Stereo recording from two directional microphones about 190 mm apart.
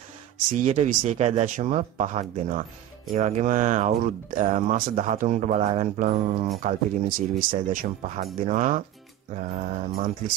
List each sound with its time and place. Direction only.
0.6 s speech: 40° right (ahead or behind)
9.9 s speech: 45° right (ahead or behind)